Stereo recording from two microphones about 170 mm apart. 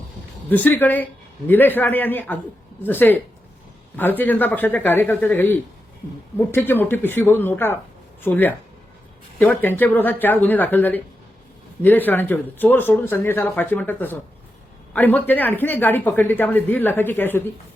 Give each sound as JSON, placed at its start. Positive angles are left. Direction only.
{"t": 0.5, "sound": "speech", "side_deg": 10}